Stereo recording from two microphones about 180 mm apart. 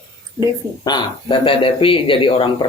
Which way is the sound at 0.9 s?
25° left (ahead or behind).